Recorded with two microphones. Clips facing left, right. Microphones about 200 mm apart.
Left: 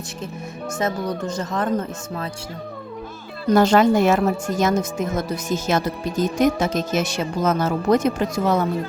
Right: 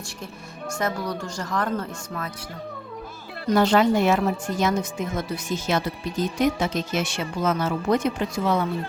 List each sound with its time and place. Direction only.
0.7 s speech: 20° left (ahead or behind)
3.5 s a woman's voice: 45° left (ahead or behind)